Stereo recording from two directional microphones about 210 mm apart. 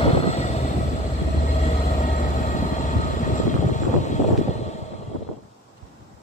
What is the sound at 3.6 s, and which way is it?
Vehicle, 35° left (ahead or behind).